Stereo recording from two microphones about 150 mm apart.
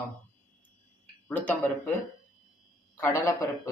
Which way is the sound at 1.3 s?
10° left (ahead or behind).